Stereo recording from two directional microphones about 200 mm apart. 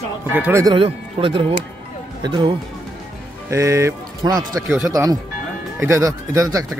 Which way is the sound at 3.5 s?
15° right (ahead or behind).